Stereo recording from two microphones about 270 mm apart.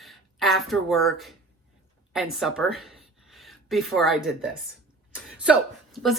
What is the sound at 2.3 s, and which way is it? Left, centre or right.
Speech, centre.